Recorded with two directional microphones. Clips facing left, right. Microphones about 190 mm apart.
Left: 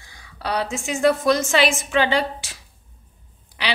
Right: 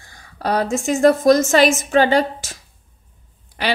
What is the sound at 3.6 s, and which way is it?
Speech, 50° right (ahead or behind).